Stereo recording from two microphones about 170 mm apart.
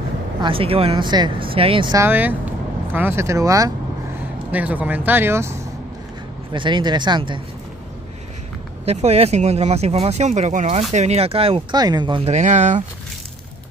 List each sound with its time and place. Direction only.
0.4 s speech: 30° right (ahead or behind)
2.0 s speech: 10° right (ahead or behind)
4.5 s speech: 10° right (ahead or behind)
6.5 s speech: 30° right (ahead or behind)
8.8 s speech: 35° right (ahead or behind)
12.3 s speech: 45° right (ahead or behind)